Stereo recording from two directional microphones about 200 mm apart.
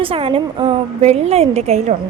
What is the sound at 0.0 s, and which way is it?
A woman's voice, 25° right (ahead or behind).